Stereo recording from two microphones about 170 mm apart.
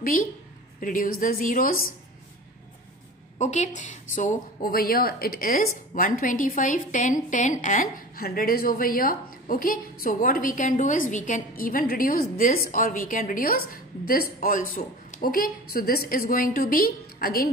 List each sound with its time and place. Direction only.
0.0 s a woman's voice: 55° left (ahead or behind)
3.3 s speech: 40° left (ahead or behind); by 17.5 s 60° left (ahead or behind)